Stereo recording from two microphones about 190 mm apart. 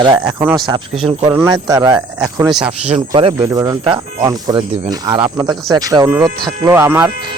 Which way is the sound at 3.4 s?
15° right (ahead or behind).